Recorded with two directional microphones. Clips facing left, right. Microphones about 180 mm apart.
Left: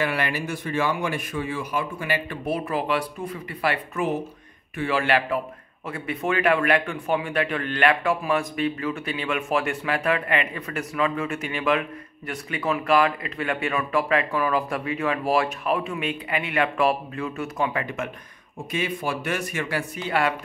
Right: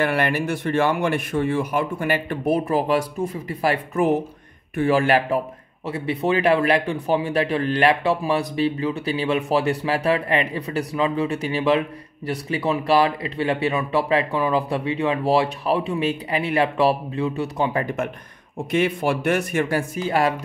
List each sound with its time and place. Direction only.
0.0 s a man's voice: 55° right (ahead or behind); by 17.8 s 35° right (ahead or behind)
19.2 s a man's voice: 50° right (ahead or behind)